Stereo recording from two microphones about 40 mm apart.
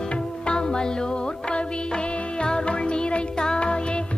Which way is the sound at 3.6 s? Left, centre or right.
Left.